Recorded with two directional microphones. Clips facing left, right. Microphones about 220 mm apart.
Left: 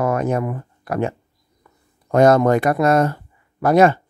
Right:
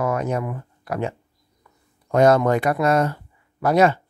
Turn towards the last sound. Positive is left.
turn(degrees=50)  # may be behind; listen again after turning